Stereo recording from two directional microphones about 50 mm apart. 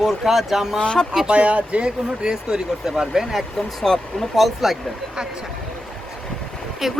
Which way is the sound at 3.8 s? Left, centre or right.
Centre.